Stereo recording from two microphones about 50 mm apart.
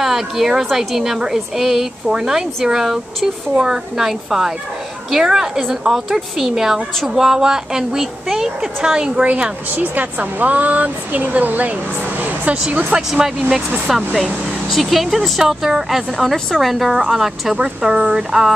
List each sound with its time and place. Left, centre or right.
0.0 s a woman's voice: centre
9.2 s speech: right
12.2 s a sound: right
13.1 s a woman's voice: centre